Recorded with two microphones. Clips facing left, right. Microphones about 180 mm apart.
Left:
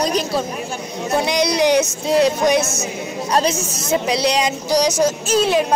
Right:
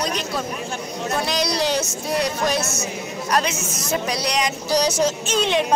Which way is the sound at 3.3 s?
35° left (ahead or behind).